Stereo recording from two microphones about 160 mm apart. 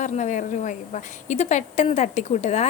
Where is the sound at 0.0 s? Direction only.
50° left (ahead or behind).